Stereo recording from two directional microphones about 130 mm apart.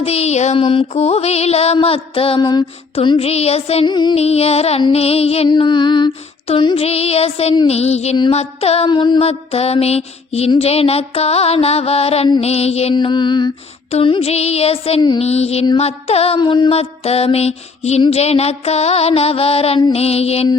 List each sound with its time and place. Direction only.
0.0 s a sound: 50° left (ahead or behind)
0.5 s music: 45° left (ahead or behind)
2.9 s music: 45° left (ahead or behind)
3.8 s music: 35° left (ahead or behind)
4.2 s music: 50° left (ahead or behind)
5.5 s music: 35° left (ahead or behind); by 7.5 s 50° left (ahead or behind)
7.7 s a sound: 55° left (ahead or behind)
8.3 s music: 50° left (ahead or behind)
8.9 s music: 40° left (ahead or behind); by 12.9 s 55° left (ahead or behind)
12.9 s music: 35° left (ahead or behind)
13.9 s music: 50° left (ahead or behind)
16.4 s music: 40° left (ahead or behind)